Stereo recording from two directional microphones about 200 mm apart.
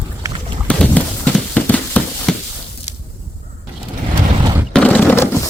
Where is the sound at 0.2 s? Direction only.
25° right (ahead or behind).